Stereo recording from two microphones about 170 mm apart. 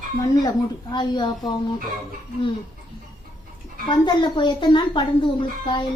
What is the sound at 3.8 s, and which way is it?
Speech, 25° left (ahead or behind).